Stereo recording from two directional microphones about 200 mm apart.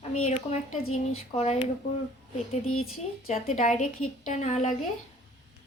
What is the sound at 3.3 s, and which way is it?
A woman's voice, 35° left (ahead or behind).